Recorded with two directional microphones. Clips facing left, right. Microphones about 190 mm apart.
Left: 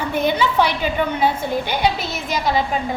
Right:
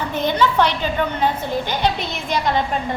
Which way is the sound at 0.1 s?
10° left (ahead or behind).